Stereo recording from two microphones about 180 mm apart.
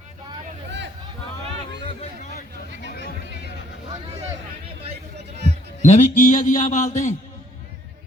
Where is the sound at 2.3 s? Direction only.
80° right.